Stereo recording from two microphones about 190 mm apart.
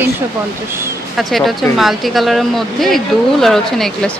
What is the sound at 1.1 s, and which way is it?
Speech, centre (ahead or behind).